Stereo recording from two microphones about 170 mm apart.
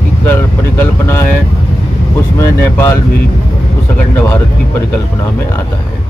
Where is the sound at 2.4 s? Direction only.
15° left (ahead or behind).